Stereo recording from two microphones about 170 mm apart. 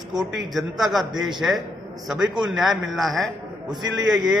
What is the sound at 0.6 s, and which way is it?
A man's voice, centre (ahead or behind).